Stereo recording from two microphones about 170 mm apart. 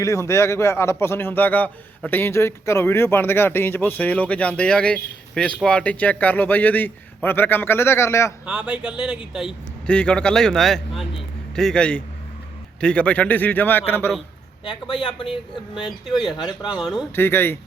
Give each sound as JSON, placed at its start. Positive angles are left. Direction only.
{"t": 0.0, "sound": "a man's voice", "side_deg": 20}
{"t": 8.4, "sound": "a man's voice", "side_deg": -5}
{"t": 14.6, "sound": "speech", "side_deg": 30}
{"t": 16.7, "sound": "speech", "side_deg": 0}
{"t": 17.2, "sound": "a man's voice", "side_deg": 15}